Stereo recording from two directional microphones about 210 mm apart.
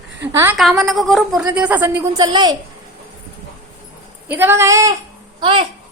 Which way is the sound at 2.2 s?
20° right (ahead or behind).